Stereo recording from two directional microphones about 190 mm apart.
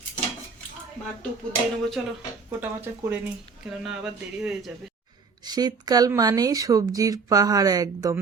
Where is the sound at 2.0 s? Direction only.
5° right (ahead or behind).